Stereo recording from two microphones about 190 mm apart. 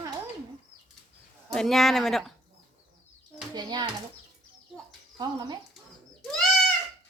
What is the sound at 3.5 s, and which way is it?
Speech, 20° right (ahead or behind).